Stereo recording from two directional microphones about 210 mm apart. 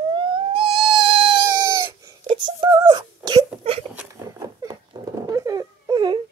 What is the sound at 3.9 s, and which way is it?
Patter, 15° right (ahead or behind).